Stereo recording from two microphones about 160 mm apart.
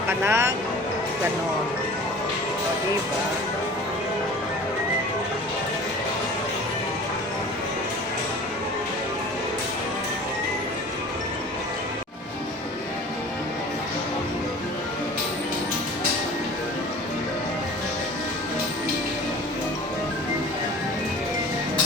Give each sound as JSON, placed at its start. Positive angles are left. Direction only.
{"t": 0.1, "sound": "speech", "side_deg": -15}